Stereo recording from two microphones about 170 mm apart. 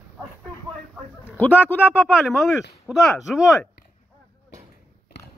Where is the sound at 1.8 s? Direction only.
5° right (ahead or behind).